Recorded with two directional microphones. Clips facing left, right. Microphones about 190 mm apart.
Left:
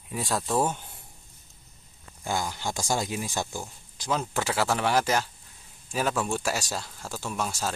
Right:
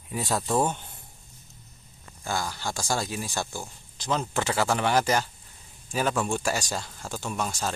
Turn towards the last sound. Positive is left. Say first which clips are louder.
# right 1 dB
turn(degrees=5)  # may be behind; listen again after turning